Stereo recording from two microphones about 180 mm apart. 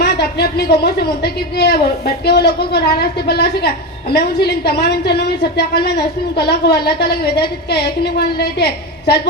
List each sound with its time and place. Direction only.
0.0 s a woman's voice: 60° left (ahead or behind)